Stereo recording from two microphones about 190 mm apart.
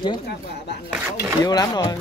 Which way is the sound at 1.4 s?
20° left (ahead or behind).